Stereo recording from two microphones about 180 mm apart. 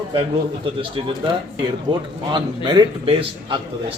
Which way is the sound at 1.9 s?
30° right (ahead or behind).